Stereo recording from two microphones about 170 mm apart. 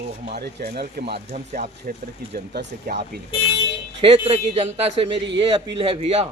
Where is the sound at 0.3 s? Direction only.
70° right (ahead or behind).